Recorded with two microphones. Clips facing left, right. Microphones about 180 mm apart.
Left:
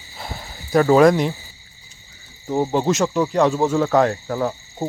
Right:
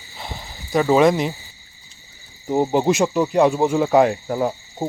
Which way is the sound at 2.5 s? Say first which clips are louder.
Right 2 dB; 15° right (ahead or behind).